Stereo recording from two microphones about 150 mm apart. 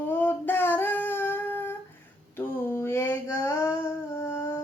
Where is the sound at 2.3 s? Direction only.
15° left (ahead or behind).